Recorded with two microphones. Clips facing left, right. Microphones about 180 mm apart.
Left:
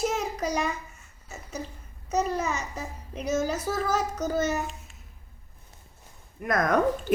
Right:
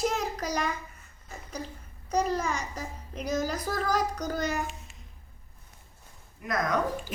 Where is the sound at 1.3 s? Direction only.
5° left (ahead or behind).